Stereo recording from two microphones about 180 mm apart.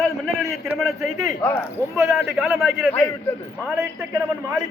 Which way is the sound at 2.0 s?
15° right (ahead or behind).